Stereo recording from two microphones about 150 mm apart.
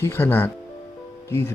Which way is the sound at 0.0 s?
15° left (ahead or behind).